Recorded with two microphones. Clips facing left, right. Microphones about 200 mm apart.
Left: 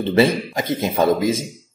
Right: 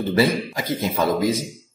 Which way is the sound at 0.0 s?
25° left (ahead or behind).